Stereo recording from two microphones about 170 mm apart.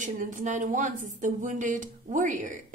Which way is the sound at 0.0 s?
50° right (ahead or behind).